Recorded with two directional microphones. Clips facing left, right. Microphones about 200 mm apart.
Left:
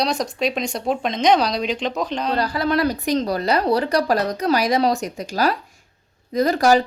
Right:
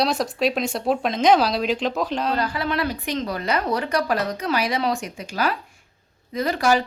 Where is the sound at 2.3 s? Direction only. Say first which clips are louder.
Left 4 dB; 40° left (ahead or behind).